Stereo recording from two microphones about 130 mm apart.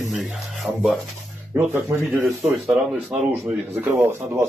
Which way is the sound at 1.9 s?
15° right (ahead or behind).